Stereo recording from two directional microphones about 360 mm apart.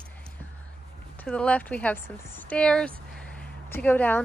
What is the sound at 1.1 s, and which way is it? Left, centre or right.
Speech, centre.